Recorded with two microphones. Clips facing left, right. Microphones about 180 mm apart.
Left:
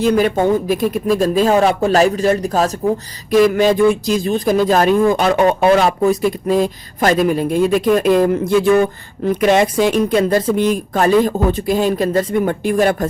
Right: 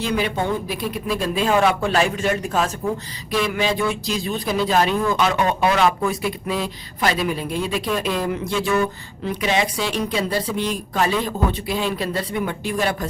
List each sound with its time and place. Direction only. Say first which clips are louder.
0.0 s a man's voice: left 9 dB; 45° left (ahead or behind)